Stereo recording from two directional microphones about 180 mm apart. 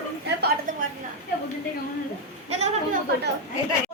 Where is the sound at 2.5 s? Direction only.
40° right (ahead or behind).